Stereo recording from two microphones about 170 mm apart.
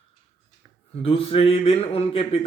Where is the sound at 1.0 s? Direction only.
35° left (ahead or behind).